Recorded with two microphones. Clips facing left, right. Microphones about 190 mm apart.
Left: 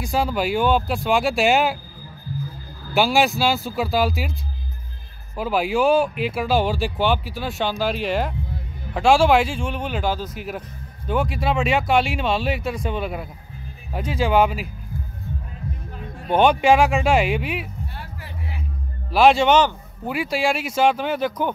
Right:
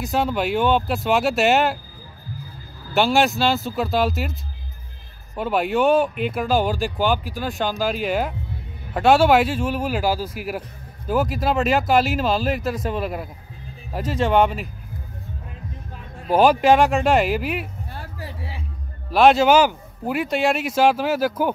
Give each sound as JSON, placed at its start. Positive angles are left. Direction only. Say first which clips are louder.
{"t": 0.0, "sound": "a man's voice", "louder": "even", "side_deg": 0}
{"t": 2.9, "sound": "a man's voice", "louder": "even", "side_deg": 0}
{"t": 16.3, "sound": "a man's voice", "louder": "right 1 dB", "side_deg": 0}
{"t": 17.9, "sound": "a sound", "louder": "right 2 dB", "side_deg": -35}
{"t": 19.0, "sound": "a man's voice", "louder": "right 1 dB", "side_deg": 0}